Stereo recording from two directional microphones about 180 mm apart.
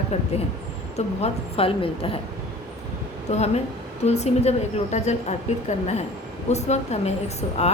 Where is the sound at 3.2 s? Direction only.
35° left (ahead or behind).